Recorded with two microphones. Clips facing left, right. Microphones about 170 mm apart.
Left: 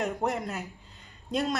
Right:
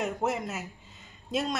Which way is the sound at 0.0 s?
Centre (ahead or behind).